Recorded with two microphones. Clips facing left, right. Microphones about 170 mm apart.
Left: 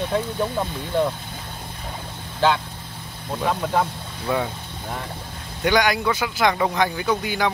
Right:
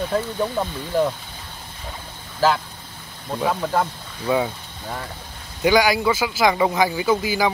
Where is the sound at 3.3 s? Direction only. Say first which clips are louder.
Right 1 dB; centre (ahead or behind).